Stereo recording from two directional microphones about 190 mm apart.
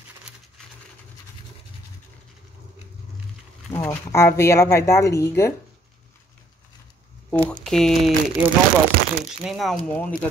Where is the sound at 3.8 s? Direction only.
10° left (ahead or behind).